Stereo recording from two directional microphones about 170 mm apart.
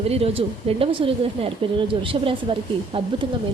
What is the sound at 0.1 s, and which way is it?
A woman's voice, 35° right (ahead or behind).